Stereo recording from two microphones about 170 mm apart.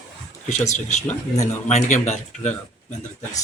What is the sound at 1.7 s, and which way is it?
Speech, 45° left (ahead or behind).